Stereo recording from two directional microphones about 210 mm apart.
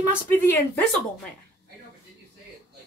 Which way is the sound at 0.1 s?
10° left (ahead or behind).